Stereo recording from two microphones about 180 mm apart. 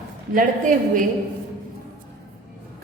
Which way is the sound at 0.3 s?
45° right (ahead or behind).